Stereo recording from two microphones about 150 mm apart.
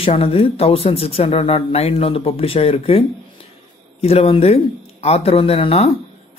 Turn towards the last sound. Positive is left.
turn(degrees=40)  # may be behind; listen again after turning